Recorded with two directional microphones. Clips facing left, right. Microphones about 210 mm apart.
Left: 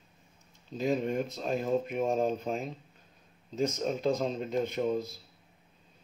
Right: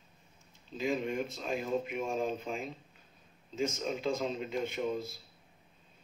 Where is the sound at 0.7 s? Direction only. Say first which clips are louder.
Left 4 dB; 40° left (ahead or behind).